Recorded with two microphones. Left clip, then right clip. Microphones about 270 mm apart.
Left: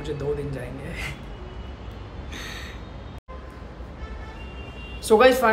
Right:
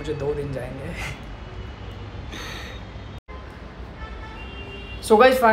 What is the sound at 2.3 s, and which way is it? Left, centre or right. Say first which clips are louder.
Gasp: right 1 dB; centre.